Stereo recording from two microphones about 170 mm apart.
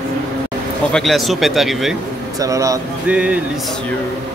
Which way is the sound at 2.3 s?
20° right (ahead or behind).